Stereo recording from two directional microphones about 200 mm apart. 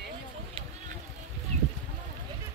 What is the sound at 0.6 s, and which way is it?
Run, 25° right (ahead or behind).